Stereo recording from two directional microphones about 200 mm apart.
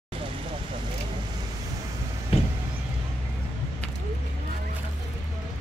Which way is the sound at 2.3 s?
30° left (ahead or behind).